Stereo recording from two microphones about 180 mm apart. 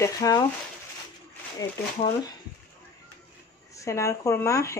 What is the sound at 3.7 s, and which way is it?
Speech, 15° left (ahead or behind).